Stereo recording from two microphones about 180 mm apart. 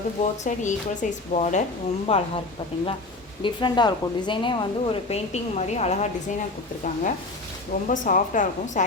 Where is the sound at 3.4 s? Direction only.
25° left (ahead or behind).